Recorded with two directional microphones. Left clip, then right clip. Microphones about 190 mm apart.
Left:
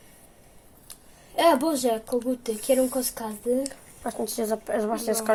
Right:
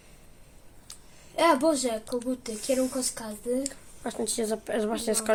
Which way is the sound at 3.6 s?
20° right (ahead or behind).